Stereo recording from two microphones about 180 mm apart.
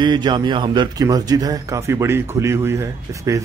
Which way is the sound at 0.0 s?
25° right (ahead or behind).